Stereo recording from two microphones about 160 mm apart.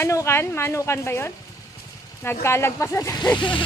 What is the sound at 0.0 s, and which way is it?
Speech, 15° left (ahead or behind).